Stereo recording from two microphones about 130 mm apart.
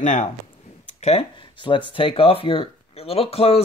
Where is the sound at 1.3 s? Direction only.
40° left (ahead or behind).